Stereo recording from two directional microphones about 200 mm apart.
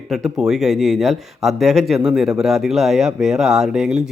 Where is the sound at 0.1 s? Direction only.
Centre (ahead or behind).